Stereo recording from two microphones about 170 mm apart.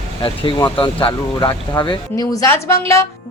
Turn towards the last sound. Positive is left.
turn(degrees=15)  # may be behind; listen again after turning